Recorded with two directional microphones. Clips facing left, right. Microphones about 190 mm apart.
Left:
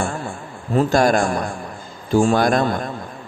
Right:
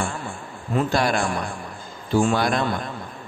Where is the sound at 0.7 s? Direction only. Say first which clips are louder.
Left 6 dB; 45° left (ahead or behind).